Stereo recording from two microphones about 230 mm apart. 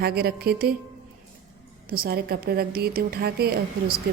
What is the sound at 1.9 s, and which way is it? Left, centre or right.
A woman's voice, right.